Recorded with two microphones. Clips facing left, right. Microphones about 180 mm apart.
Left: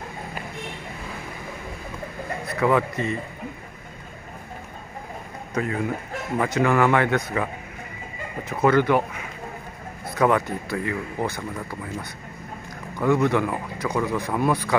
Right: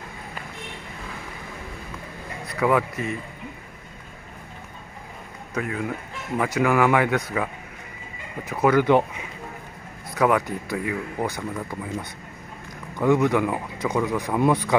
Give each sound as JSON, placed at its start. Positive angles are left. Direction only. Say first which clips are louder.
{"t": 2.6, "sound": "speech", "louder": "even", "side_deg": -5}
{"t": 5.5, "sound": "speech", "louder": "left 2 dB", "side_deg": -5}
{"t": 8.5, "sound": "speech", "louder": "even", "side_deg": -10}
{"t": 10.1, "sound": "speech", "louder": "even", "side_deg": -5}
{"t": 13.0, "sound": "speech", "louder": "right 1 dB", "side_deg": -15}